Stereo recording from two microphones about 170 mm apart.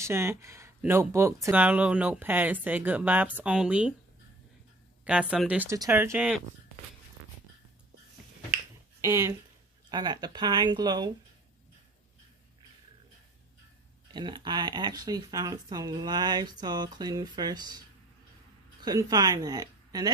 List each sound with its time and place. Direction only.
0.0 s speech: 15° right (ahead or behind)
5.0 s speech: 5° right (ahead or behind)
9.0 s speech: 15° right (ahead or behind)
14.1 s speech: 25° right (ahead or behind)
18.8 s speech: 20° right (ahead or behind)